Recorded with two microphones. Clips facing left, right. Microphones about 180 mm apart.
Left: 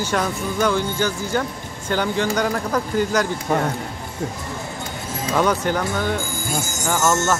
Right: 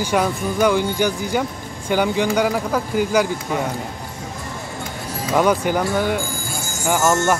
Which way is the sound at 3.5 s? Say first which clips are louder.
Left 2 dB; 55° left (ahead or behind).